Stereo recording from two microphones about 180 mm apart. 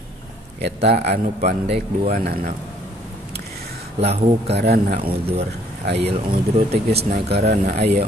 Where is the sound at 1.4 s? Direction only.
40° right (ahead or behind).